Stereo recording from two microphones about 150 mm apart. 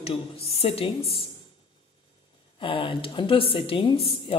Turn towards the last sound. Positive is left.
turn(degrees=40)  # may be behind; listen again after turning